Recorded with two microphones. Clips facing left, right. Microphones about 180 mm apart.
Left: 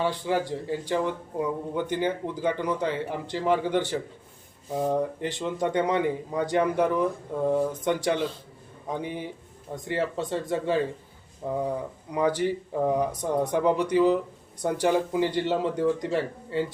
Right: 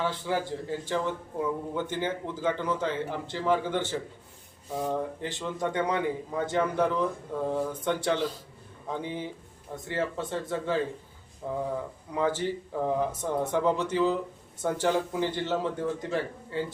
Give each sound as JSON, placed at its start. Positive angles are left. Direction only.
{"t": 0.0, "sound": "a man's voice", "side_deg": 20}
{"t": 12.1, "sound": "speech", "side_deg": 15}